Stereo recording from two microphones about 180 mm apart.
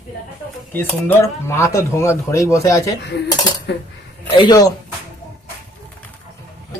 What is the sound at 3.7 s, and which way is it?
Speech, 70° left (ahead or behind).